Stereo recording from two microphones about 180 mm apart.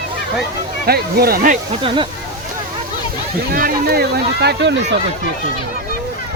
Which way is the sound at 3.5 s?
60° right (ahead or behind).